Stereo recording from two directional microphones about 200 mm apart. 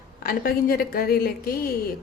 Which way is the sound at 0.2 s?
45° left (ahead or behind).